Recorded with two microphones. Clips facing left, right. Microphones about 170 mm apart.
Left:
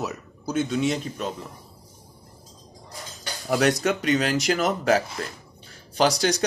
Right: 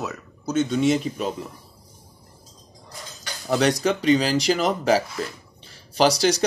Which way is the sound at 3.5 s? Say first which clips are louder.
Right 1 dB; 5° left (ahead or behind).